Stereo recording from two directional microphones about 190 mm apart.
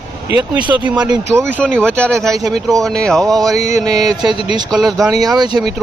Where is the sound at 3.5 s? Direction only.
35° left (ahead or behind).